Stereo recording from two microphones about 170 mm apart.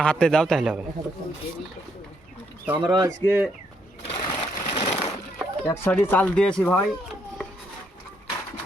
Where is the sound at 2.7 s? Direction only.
25° right (ahead or behind).